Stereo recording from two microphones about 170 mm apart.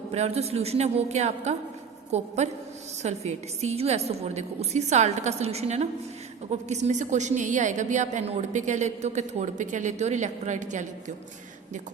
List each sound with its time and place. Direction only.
0.1 s a woman's voice: 40° right (ahead or behind)